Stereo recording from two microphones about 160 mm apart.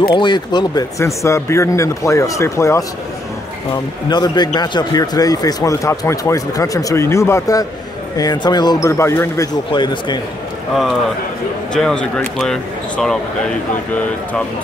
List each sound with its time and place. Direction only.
0.1 s speech: 30° left (ahead or behind)
4.1 s speech: 25° left (ahead or behind)
9.7 s speech: 30° left (ahead or behind)
11.7 s speech: 5° left (ahead or behind)